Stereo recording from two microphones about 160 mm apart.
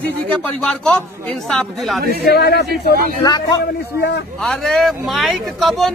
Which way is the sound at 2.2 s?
85° left.